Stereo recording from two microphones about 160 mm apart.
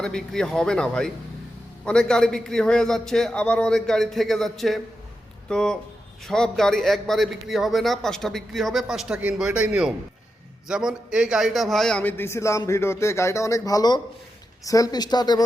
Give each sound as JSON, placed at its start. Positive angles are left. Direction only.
{"t": 0.0, "sound": "a man's voice", "side_deg": 5}